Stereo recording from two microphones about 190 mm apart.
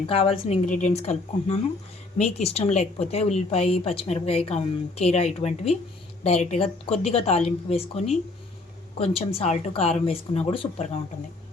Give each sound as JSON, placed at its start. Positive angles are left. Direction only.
{"t": 0.1, "sound": "a woman's voice", "side_deg": 30}